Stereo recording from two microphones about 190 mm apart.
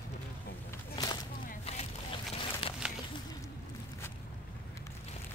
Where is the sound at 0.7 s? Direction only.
15° left (ahead or behind).